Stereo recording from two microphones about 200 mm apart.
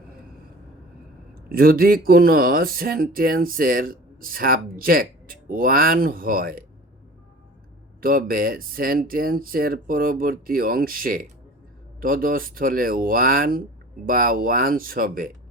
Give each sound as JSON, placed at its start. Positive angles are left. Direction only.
{"t": 1.5, "sound": "speech", "side_deg": -45}
{"t": 8.0, "sound": "speech", "side_deg": -45}